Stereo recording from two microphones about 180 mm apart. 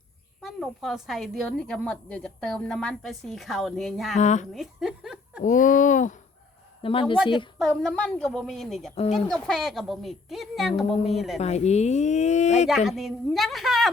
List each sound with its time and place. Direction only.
0.4 s a woman's voice: centre (ahead or behind)
4.2 s speech: 40° left (ahead or behind)
4.5 s speech: centre (ahead or behind)
5.4 s speech: 45° left (ahead or behind)
6.8 s a woman's voice: 30° left (ahead or behind)
7.6 s a woman's voice: 5° left (ahead or behind)
9.0 s speech: 35° left (ahead or behind)
9.3 s a woman's voice: centre (ahead or behind)
11.3 s speech: 35° left (ahead or behind)
12.6 s a woman's voice: centre (ahead or behind)